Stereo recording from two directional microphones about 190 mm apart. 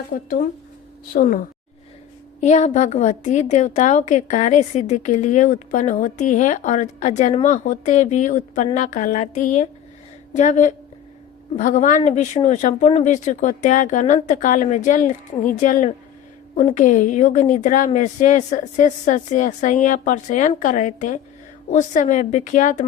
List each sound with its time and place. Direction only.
0.1 s a woman's voice: 45° left (ahead or behind)